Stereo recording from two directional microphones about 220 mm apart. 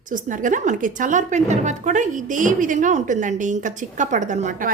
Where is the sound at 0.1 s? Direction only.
35° right (ahead or behind).